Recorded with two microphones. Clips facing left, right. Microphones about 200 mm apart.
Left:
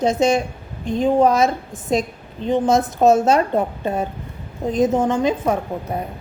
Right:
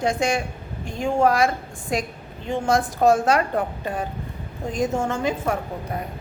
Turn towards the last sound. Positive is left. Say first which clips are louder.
# left 4 dB
turn(degrees=20)  # may be behind; listen again after turning